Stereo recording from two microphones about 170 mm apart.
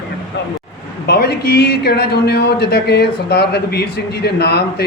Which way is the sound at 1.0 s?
70° left (ahead or behind).